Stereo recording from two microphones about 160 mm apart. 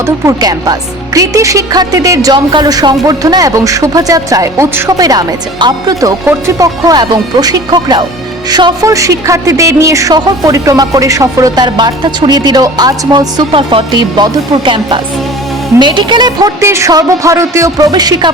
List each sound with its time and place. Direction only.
0.0 s speech: 20° right (ahead or behind)